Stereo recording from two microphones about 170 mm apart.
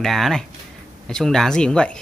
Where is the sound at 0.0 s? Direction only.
Centre (ahead or behind).